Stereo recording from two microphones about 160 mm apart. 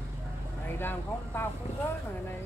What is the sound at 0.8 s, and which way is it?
Speech, 15° left (ahead or behind).